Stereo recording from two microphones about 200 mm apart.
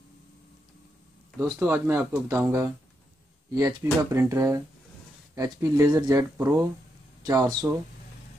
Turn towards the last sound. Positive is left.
turn(degrees=-20)  # may be behind; listen again after turning